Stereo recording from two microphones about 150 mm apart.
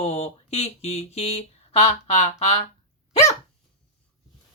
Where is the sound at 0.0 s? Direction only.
40° left (ahead or behind).